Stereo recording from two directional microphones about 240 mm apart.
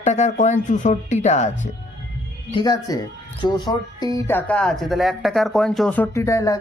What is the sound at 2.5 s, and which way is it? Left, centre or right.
Speech, centre.